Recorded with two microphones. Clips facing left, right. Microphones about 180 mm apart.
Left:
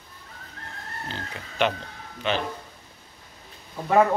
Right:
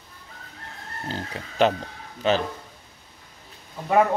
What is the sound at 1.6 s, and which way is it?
Speech, 35° right (ahead or behind).